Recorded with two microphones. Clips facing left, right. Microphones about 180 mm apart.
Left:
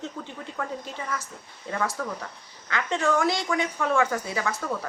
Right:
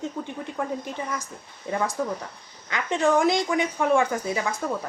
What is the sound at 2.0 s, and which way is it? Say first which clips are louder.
A woman's voice: right 4 dB; 20° right (ahead or behind).